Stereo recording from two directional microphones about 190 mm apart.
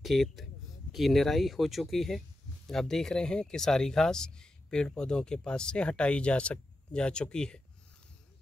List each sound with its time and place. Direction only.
0.0 s speech: centre (ahead or behind)